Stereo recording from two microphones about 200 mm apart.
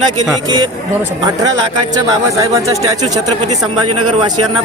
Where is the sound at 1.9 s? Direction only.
15° right (ahead or behind).